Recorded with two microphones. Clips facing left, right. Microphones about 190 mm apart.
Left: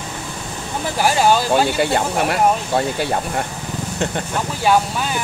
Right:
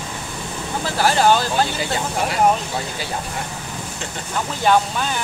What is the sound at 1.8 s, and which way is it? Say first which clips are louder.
Speech: left 5 dB; 60° left (ahead or behind).